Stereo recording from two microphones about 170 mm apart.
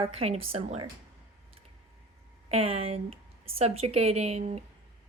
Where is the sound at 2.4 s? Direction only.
35° right (ahead or behind).